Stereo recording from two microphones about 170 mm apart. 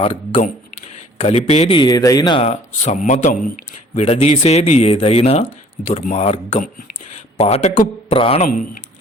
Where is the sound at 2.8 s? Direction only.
45° left (ahead or behind).